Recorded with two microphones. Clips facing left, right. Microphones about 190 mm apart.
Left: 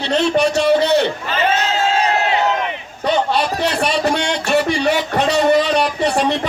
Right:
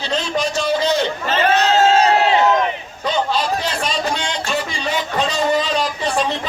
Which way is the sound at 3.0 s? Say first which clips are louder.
Left 3 dB; 65° left (ahead or behind).